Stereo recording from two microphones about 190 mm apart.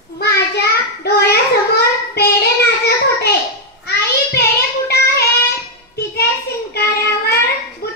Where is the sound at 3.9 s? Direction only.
60° left (ahead or behind).